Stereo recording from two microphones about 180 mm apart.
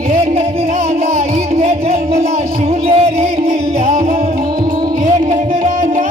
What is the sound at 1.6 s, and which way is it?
Music, 35° right (ahead or behind).